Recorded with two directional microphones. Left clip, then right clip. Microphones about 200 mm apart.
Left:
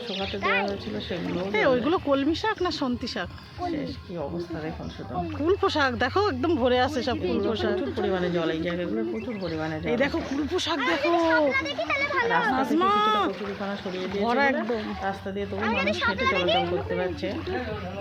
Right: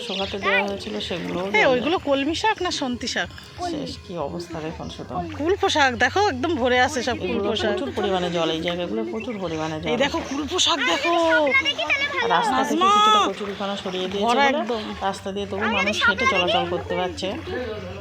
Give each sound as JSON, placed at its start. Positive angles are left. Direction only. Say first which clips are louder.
{"t": 0.1, "sound": "speech", "louder": "right 4 dB", "side_deg": -10}
{"t": 1.5, "sound": "speech", "louder": "right 4 dB", "side_deg": 5}
{"t": 5.5, "sound": "speech", "louder": "right 4 dB", "side_deg": 0}
{"t": 11.5, "sound": "a child's voice", "louder": "right 6 dB", "side_deg": -25}
{"t": 12.7, "sound": "speech", "louder": "right 7 dB", "side_deg": 5}
{"t": 15.6, "sound": "a child's voice", "louder": "right 5 dB", "side_deg": -25}
{"t": 16.9, "sound": "speech", "louder": "right 3 dB", "side_deg": -10}